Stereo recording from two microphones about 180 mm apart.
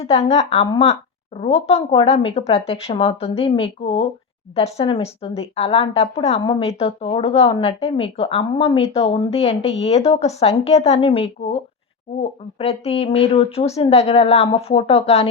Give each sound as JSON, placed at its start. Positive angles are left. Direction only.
{"t": 0.0, "sound": "speech", "side_deg": 35}
{"t": 9.5, "sound": "speech", "side_deg": 90}
{"t": 9.8, "sound": "speech", "side_deg": 35}